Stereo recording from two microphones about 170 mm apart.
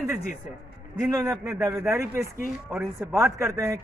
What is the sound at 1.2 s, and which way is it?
A man's voice, 20° right (ahead or behind).